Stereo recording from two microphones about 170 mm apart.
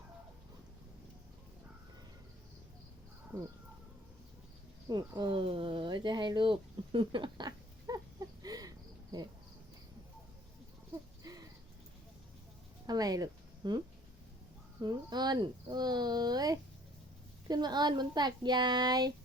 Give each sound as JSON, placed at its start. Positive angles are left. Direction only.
{"t": 4.9, "sound": "speech", "side_deg": -25}
{"t": 11.2, "sound": "a sound", "side_deg": -20}
{"t": 12.9, "sound": "speech", "side_deg": -20}